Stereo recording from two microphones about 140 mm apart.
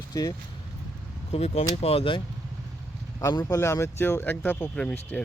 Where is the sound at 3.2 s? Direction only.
25° left (ahead or behind).